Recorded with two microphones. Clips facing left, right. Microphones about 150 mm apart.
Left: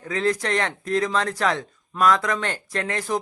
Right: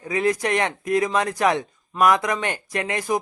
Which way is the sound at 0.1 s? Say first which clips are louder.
Right 2 dB; 15° right (ahead or behind).